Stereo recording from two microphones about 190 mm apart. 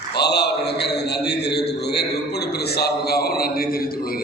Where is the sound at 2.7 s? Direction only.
55° left (ahead or behind).